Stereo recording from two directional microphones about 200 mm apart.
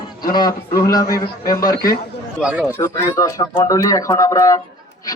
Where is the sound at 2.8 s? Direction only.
15° left (ahead or behind).